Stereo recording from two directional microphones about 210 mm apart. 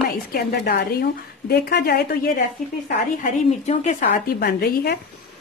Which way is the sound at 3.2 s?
35° left (ahead or behind).